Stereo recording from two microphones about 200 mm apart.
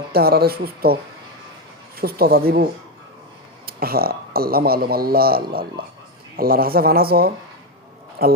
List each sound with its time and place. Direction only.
0.1 s speech: 50° right (ahead or behind)
2.0 s speech: 50° right (ahead or behind)
3.7 s speech: 50° right (ahead or behind)